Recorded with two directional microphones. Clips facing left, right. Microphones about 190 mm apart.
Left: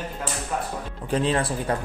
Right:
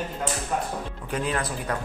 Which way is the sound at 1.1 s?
30° left (ahead or behind).